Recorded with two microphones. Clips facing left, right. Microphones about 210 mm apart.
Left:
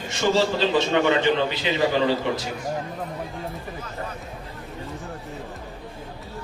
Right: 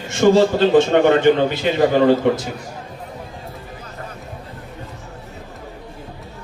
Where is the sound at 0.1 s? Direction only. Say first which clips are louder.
Right 8 dB; 50° right (ahead or behind).